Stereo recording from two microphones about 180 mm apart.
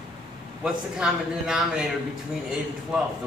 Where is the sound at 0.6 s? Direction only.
5° right (ahead or behind).